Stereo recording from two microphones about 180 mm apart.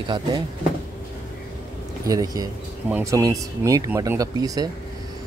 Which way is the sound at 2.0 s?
20° right (ahead or behind).